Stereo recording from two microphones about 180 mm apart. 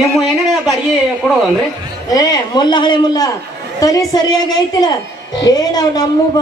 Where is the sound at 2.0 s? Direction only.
20° left (ahead or behind).